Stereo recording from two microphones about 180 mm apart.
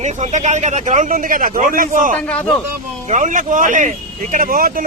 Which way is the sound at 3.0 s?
45° right (ahead or behind).